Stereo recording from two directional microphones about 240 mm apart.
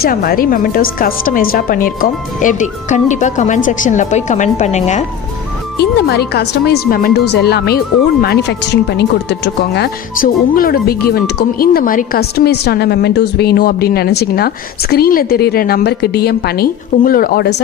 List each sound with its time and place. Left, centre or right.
0.0 s speech: left
5.8 s speech: left